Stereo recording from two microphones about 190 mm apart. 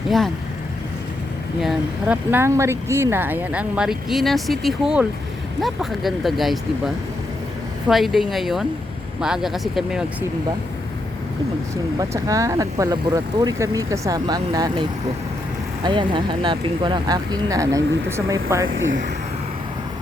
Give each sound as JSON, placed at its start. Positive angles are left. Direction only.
{"t": 1.6, "sound": "speech", "side_deg": -10}
{"t": 11.9, "sound": "speech", "side_deg": -15}
{"t": 18.6, "sound": "speech", "side_deg": -90}